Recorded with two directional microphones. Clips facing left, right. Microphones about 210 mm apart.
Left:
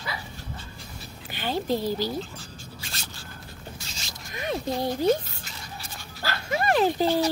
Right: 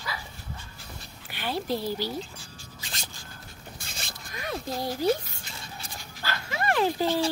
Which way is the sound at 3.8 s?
55° right (ahead or behind).